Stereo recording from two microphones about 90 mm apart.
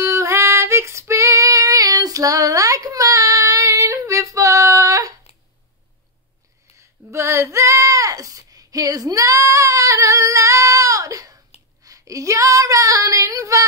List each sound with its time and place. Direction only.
0.0 s female singing: 35° right (ahead or behind)
6.8 s female singing: 35° right (ahead or behind)